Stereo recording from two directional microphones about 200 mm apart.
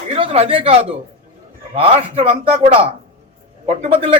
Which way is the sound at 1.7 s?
30° right (ahead or behind).